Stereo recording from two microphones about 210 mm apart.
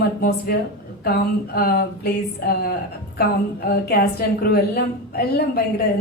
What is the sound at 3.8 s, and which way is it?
A woman's voice, 45° left (ahead or behind).